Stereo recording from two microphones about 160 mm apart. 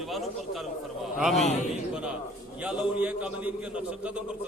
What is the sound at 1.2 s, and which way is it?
Speech, centre (ahead or behind).